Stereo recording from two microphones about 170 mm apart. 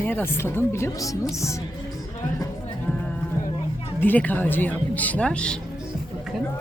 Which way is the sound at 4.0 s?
10° left (ahead or behind).